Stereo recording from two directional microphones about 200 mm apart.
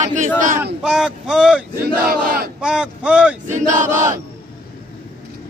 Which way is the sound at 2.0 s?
45° right (ahead or behind).